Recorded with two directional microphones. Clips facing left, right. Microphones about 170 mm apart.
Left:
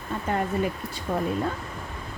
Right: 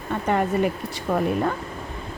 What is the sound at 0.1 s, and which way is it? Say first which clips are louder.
Speech: right 5 dB; 75° right (ahead or behind).